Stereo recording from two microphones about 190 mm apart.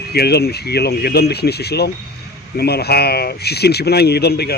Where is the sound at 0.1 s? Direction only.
60° left (ahead or behind).